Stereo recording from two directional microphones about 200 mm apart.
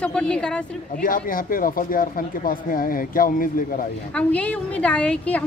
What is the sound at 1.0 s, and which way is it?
Speech, 45° left (ahead or behind).